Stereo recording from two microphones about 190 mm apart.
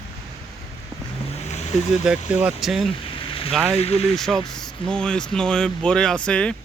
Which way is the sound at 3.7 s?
30° left (ahead or behind).